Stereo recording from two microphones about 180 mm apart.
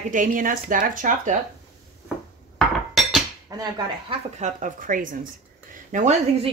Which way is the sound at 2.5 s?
Centre (ahead or behind).